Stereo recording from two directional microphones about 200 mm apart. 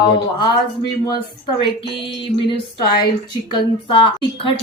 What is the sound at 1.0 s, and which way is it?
A woman's voice, 20° left (ahead or behind).